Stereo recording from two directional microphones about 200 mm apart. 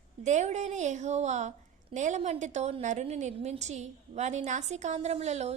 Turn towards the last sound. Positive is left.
turn(degrees=-35)  # may be behind; listen again after turning